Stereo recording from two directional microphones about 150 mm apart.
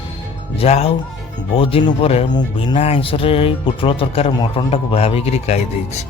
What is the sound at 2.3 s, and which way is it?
Speech, 30° left (ahead or behind).